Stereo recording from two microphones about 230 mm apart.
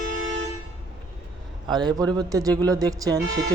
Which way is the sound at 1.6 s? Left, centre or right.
Centre.